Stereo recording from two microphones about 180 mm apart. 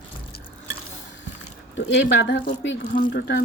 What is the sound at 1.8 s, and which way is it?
Speech, 80° left.